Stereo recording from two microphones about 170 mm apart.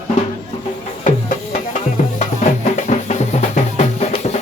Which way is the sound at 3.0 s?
40° left (ahead or behind).